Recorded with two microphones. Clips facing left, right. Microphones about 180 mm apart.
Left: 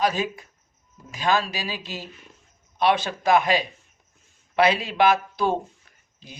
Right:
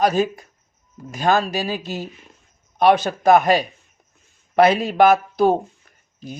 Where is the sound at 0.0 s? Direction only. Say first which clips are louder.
Right 6 dB; 45° right (ahead or behind).